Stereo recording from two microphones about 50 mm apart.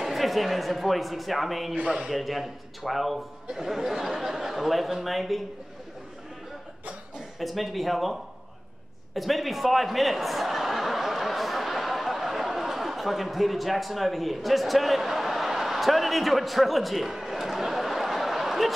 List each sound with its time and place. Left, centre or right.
0.0 s a man's voice: centre
1.8 s speech: centre
2.0 s a man's voice: centre
7.2 s speech: centre
9.1 s chuckle: centre